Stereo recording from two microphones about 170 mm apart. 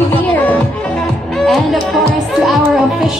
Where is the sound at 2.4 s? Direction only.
Centre (ahead or behind).